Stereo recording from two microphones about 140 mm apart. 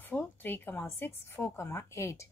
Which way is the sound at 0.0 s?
15° left (ahead or behind).